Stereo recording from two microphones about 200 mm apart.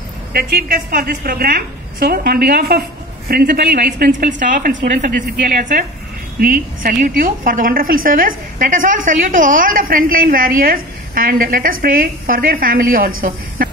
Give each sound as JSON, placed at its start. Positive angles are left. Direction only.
{"t": 0.3, "sound": "a woman's voice", "side_deg": -50}